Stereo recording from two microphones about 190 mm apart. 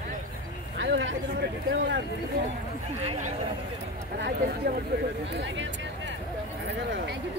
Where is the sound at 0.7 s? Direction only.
70° right (ahead or behind).